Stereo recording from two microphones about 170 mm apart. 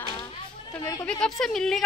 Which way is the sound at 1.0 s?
5° left (ahead or behind).